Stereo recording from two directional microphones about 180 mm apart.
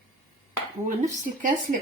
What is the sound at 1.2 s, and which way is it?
Speech, 45° right (ahead or behind).